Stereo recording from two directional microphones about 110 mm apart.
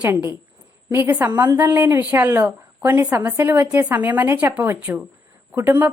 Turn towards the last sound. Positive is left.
turn(degrees=-20)  # may be behind; listen again after turning